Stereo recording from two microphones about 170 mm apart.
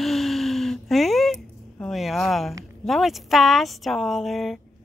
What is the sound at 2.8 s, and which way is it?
Speech, centre (ahead or behind).